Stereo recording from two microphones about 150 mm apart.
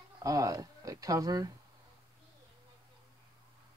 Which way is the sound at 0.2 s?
20° right (ahead or behind).